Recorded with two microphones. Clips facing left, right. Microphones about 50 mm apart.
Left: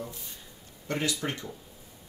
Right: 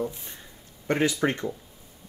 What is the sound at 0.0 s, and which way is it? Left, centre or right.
Speech, right.